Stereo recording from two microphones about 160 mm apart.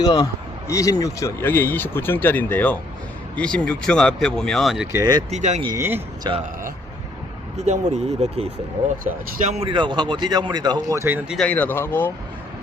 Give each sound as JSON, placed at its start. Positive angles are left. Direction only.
{"t": 0.0, "sound": "speech", "side_deg": 25}
{"t": 4.9, "sound": "speech", "side_deg": -20}
{"t": 5.3, "sound": "speech", "side_deg": -45}
{"t": 5.6, "sound": "speech", "side_deg": -15}
{"t": 6.3, "sound": "speech", "side_deg": -30}
{"t": 7.5, "sound": "speech", "side_deg": -45}
{"t": 9.6, "sound": "speech", "side_deg": -30}
{"t": 11.3, "sound": "speech", "side_deg": 5}